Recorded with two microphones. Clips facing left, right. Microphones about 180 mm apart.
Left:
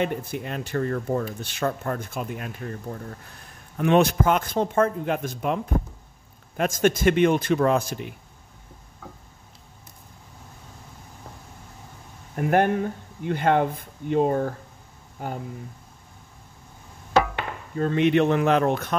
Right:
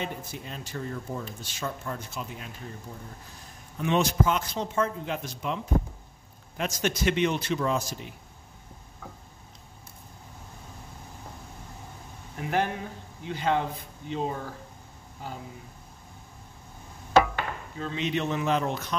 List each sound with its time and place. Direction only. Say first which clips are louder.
0.0 s speech: left 9 dB; 60° left (ahead or behind)
12.4 s speech: left 8 dB; 55° left (ahead or behind)
17.7 s speech: left 11 dB; 55° left (ahead or behind)